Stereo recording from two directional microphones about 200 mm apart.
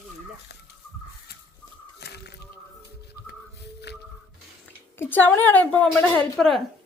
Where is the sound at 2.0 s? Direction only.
55° left (ahead or behind).